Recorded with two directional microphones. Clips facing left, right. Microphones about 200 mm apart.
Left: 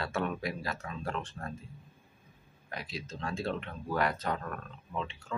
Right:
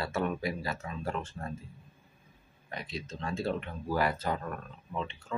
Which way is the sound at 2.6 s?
Centre (ahead or behind).